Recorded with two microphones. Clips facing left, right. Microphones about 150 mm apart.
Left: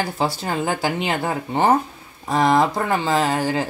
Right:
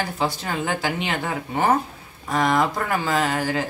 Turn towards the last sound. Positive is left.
turn(degrees=30)  # may be behind; listen again after turning